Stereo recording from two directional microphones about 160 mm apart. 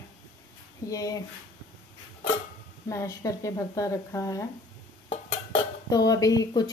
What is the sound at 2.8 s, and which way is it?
Speech, 20° left (ahead or behind).